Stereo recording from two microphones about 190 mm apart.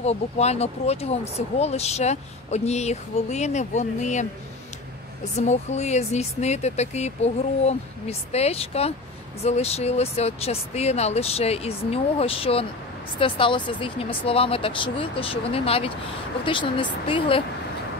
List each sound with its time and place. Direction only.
0.0 s speech: 35° left (ahead or behind)
5.4 s speech: 35° left (ahead or behind)